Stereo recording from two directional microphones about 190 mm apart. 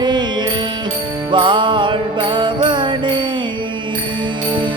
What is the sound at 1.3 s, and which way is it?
Music, 25° right (ahead or behind).